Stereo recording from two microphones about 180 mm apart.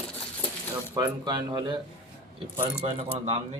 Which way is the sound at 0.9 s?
25° right (ahead or behind).